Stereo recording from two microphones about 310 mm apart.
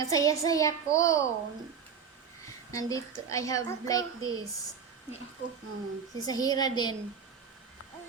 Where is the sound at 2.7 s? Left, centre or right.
Centre.